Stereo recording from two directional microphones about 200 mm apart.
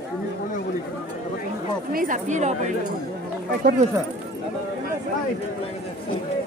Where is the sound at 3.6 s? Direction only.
45° right (ahead or behind).